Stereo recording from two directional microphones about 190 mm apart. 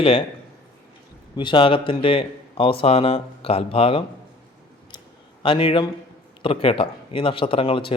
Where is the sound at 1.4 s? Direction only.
25° left (ahead or behind).